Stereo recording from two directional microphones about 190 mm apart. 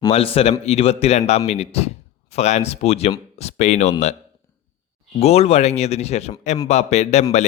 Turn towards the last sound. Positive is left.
turn(degrees=35)  # may be behind; listen again after turning